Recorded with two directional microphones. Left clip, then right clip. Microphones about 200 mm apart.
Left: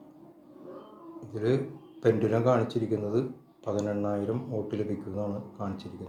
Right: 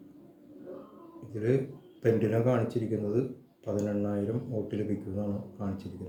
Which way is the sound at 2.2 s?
15° right (ahead or behind).